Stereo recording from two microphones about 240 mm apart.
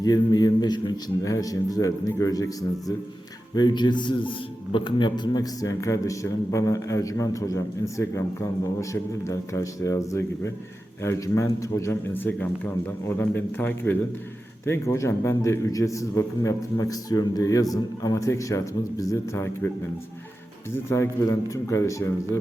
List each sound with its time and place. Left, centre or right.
0.0 s a man's voice: centre
20.7 s a man's voice: centre